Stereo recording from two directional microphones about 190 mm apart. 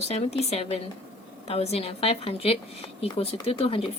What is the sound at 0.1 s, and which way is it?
Speech, 35° left (ahead or behind).